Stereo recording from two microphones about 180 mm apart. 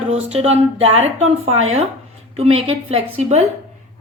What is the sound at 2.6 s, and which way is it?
Speech, 35° right (ahead or behind).